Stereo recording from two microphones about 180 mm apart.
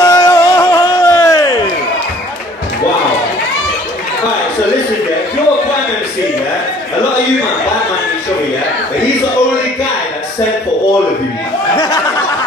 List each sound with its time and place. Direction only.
0.0 s music: 20° left (ahead or behind)